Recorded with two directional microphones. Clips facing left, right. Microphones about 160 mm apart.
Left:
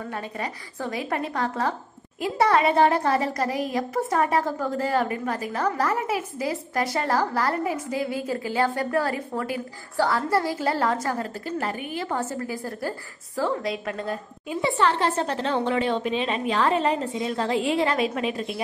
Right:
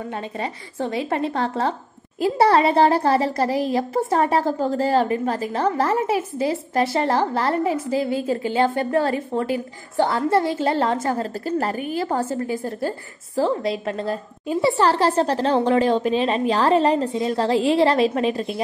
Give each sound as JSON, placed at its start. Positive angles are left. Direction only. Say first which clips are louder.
{"t": 0.1, "sound": "a woman's voice", "louder": "right 3 dB", "side_deg": -25}
{"t": 11.4, "sound": "a woman's voice", "louder": "right 6 dB", "side_deg": -35}